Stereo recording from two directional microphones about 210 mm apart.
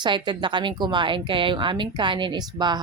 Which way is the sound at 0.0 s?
20° right (ahead or behind).